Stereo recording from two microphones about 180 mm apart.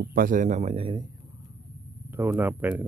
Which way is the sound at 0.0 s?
50° right (ahead or behind).